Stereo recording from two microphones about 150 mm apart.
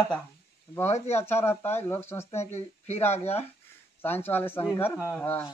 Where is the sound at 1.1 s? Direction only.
15° left (ahead or behind).